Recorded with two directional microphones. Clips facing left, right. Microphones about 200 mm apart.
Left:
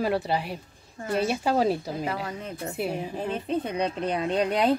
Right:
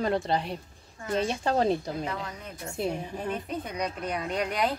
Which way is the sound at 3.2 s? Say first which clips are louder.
Left 6 dB; 25° left (ahead or behind).